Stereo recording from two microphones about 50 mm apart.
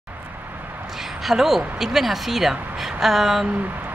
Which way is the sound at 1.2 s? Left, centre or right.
Centre.